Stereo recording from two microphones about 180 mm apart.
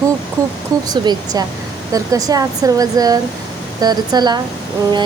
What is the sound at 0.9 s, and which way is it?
Speech, 25° right (ahead or behind).